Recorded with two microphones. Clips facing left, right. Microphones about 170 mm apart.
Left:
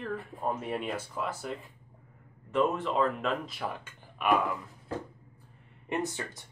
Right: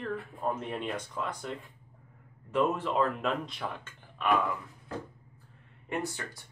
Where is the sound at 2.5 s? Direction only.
Centre (ahead or behind).